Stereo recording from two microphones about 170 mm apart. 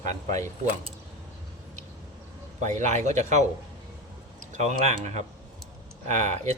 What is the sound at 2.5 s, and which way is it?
Speech, 45° right (ahead or behind).